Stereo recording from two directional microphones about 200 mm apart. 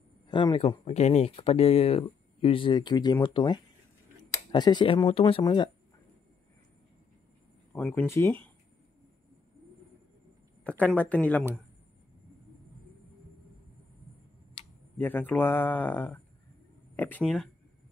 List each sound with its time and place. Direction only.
0.3 s speech: 20° left (ahead or behind)
7.7 s speech: 10° left (ahead or behind)
10.6 s speech: 5° left (ahead or behind)
15.0 s speech: 10° left (ahead or behind)